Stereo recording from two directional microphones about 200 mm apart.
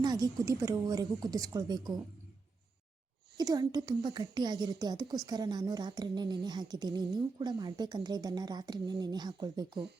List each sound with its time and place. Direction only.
0.0 s a woman's voice: 20° right (ahead or behind)
3.3 s a woman's voice: 20° right (ahead or behind)